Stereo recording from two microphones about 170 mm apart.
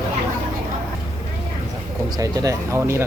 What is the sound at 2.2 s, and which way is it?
Speech, 20° right (ahead or behind).